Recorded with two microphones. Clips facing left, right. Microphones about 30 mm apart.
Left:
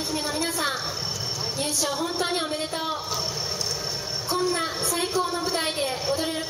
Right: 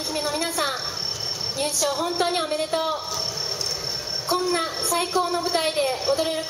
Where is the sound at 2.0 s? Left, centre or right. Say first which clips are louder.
Right 3 dB; right.